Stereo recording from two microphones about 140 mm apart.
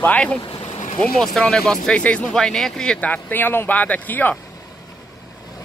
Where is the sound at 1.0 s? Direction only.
5° left (ahead or behind).